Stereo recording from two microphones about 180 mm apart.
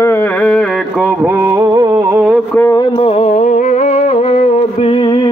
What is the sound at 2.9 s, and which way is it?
Music, 30° left (ahead or behind).